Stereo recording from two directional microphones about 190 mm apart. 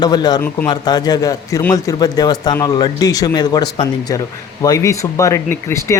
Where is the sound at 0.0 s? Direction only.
20° left (ahead or behind).